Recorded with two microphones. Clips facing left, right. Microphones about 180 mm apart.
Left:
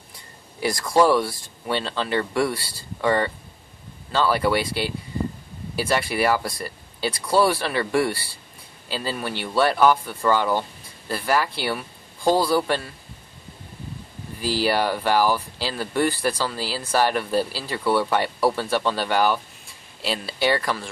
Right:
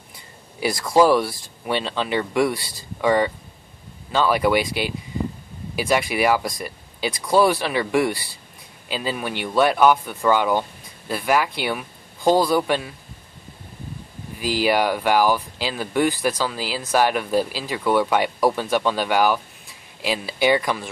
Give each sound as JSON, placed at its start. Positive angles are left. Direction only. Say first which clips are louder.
{"t": 0.8, "sound": "speech", "louder": "right 2 dB", "side_deg": 0}
{"t": 2.0, "sound": "speech", "louder": "right 2 dB", "side_deg": -15}
{"t": 14.4, "sound": "speech", "louder": "right 2 dB", "side_deg": -15}